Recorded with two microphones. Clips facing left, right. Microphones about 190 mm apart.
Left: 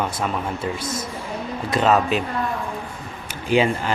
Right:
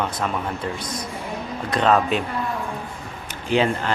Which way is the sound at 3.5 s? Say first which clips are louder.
Left 1 dB; 10° left (ahead or behind).